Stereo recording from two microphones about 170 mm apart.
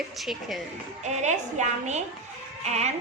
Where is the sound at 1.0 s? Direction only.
45° right (ahead or behind).